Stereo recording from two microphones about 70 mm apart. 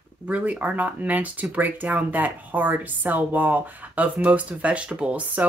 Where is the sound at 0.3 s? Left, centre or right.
Right.